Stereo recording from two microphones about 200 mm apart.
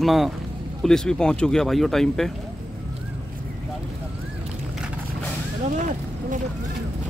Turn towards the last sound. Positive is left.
turn(degrees=-40)  # may be behind; listen again after turning